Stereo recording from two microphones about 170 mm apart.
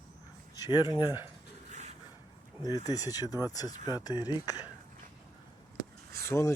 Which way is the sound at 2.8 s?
20° left (ahead or behind).